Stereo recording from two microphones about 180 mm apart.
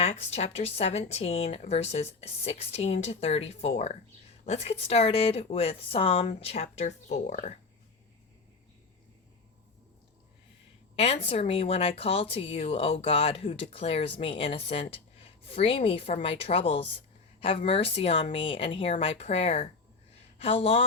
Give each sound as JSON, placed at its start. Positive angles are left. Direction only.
{"t": 0.0, "sound": "speech", "side_deg": 35}
{"t": 10.9, "sound": "speech", "side_deg": 35}